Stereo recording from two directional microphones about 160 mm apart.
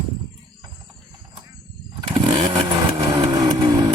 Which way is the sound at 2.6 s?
25° right (ahead or behind).